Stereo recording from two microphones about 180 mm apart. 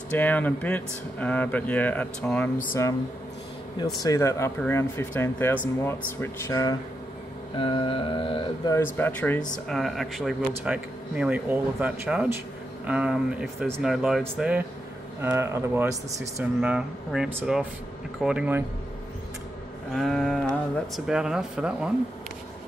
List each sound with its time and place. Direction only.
0.1 s speech: 10° left (ahead or behind)
4.0 s speech: 15° left (ahead or behind)
7.5 s mantra: 25° left (ahead or behind)
8.7 s speech: 10° left (ahead or behind); by 18.6 s 5° right (ahead or behind)
19.9 s speech: centre (ahead or behind)